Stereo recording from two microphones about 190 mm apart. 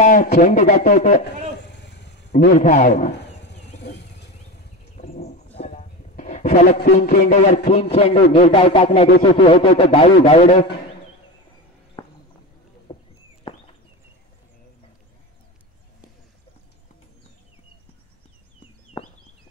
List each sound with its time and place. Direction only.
0.0 s a man's voice: 40° left (ahead or behind)
1.7 s vehicle: 65° left (ahead or behind)
2.3 s a man's voice: 40° left (ahead or behind)
3.2 s a sound: 65° left (ahead or behind)
4.9 s a sound: 35° left (ahead or behind)
6.9 s speech: 55° left (ahead or behind)
7.2 s a man's voice: 35° left (ahead or behind)
12.9 s rodents: 25° left (ahead or behind)